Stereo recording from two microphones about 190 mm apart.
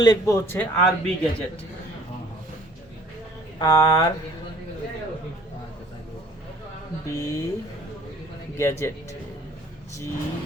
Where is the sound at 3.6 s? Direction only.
20° left (ahead or behind).